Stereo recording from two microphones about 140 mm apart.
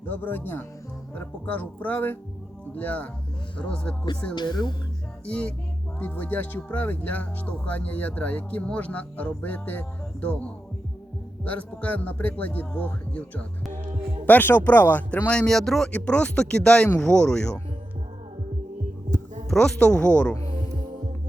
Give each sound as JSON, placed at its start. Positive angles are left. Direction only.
{"t": 0.0, "sound": "speech", "side_deg": 10}
{"t": 4.4, "sound": "speech", "side_deg": 30}
{"t": 5.2, "sound": "speech", "side_deg": 10}
{"t": 19.5, "sound": "speech", "side_deg": 5}